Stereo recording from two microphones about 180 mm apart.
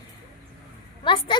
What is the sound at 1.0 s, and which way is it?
Speech, 25° left (ahead or behind).